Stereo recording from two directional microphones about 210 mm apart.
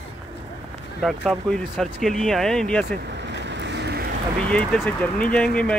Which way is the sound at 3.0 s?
55° right (ahead or behind).